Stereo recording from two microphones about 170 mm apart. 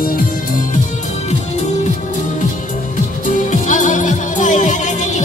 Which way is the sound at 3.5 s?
45° left (ahead or behind).